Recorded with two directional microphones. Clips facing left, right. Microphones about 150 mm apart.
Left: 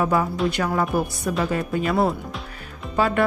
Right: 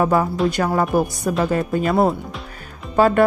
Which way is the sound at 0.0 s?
40° right (ahead or behind).